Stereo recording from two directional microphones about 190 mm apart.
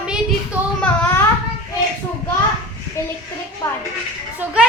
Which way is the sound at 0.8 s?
10° left (ahead or behind).